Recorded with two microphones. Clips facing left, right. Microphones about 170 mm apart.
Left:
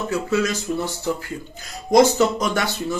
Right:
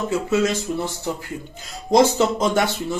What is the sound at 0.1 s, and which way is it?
Speech, 25° right (ahead or behind).